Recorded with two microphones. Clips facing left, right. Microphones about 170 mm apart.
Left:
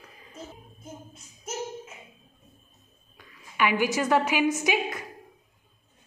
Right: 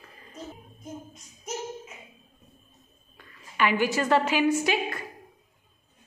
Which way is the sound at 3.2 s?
10° left (ahead or behind).